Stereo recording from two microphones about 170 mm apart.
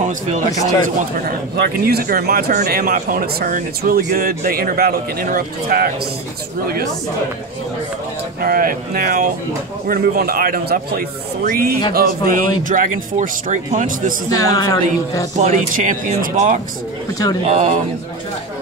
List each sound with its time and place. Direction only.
0.5 s music: 20° left (ahead or behind)
1.9 s speech: 65° right (ahead or behind)
8.4 s speech: 60° right (ahead or behind)
14.3 s music: 20° left (ahead or behind)
15.3 s speech: 45° right (ahead or behind)